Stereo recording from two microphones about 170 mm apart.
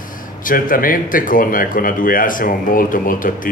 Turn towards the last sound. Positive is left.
turn(degrees=55)  # may be behind; listen again after turning